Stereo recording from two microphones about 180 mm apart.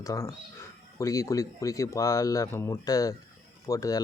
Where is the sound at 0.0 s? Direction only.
15° left (ahead or behind).